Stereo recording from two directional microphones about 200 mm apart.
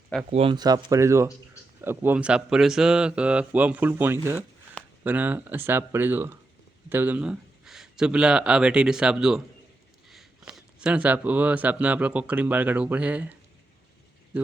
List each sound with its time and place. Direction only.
0.3 s speech: 30° right (ahead or behind); by 13.3 s 10° right (ahead or behind)
14.3 s speech: 5° right (ahead or behind)